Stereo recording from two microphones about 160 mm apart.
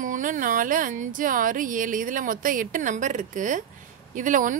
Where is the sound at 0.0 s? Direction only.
55° right (ahead or behind).